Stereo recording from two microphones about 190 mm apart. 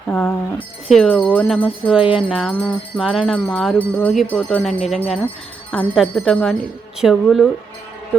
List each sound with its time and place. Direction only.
0.1 s speech: 10° left (ahead or behind)
0.9 s music: centre (ahead or behind)